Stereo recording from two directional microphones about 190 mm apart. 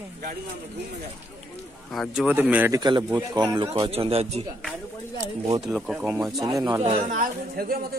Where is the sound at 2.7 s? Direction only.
20° right (ahead or behind).